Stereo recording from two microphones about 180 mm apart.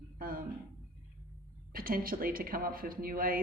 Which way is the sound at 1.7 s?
55° right (ahead or behind).